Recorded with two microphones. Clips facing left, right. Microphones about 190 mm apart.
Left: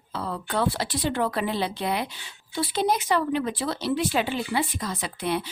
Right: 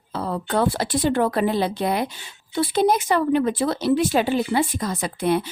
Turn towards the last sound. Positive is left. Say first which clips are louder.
# right 6 dB
turn(degrees=-50)  # may be behind; listen again after turning